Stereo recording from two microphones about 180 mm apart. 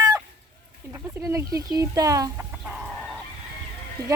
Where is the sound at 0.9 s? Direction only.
15° right (ahead or behind).